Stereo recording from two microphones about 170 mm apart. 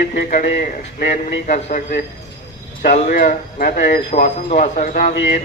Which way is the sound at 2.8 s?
45° left (ahead or behind).